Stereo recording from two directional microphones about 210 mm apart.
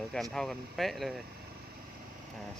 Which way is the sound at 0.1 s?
Centre (ahead or behind).